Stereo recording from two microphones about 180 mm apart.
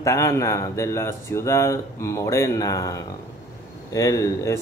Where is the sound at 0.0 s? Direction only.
15° left (ahead or behind).